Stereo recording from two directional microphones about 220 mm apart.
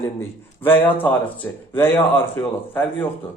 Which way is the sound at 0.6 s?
10° left (ahead or behind).